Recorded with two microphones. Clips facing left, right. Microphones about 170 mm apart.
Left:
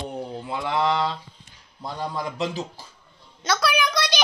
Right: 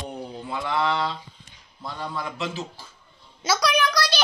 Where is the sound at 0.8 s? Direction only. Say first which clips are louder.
Left 2 dB; 35° left (ahead or behind).